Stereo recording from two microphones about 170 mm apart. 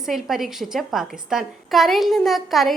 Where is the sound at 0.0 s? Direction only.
Centre (ahead or behind).